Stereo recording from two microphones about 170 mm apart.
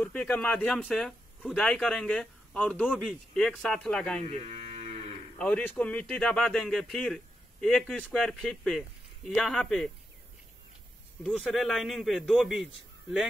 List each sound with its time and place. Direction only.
0.0 s speech: 10° left (ahead or behind)
4.2 s livestock: 40° right (ahead or behind)
5.4 s speech: 5° left (ahead or behind)
11.2 s speech: 5° left (ahead or behind)